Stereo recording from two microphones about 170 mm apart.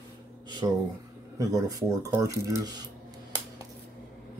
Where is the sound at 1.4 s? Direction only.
20° right (ahead or behind).